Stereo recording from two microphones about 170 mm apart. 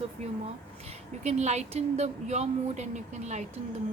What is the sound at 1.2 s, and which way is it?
A woman's voice, 40° right (ahead or behind).